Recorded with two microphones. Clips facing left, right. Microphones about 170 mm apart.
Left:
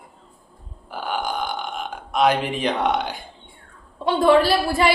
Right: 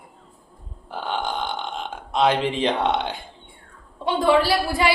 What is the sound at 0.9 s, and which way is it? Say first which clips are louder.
Speech: even; 25° right (ahead or behind).